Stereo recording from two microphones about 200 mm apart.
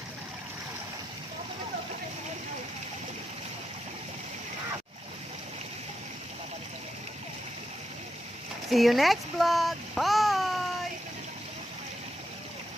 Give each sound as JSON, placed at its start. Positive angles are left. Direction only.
{"t": 8.6, "sound": "babbling", "side_deg": 0}